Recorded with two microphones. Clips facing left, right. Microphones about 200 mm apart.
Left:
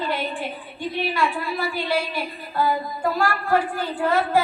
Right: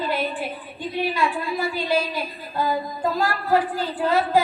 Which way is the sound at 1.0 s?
15° right (ahead or behind).